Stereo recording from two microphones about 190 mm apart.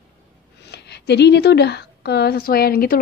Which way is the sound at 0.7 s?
60° left (ahead or behind).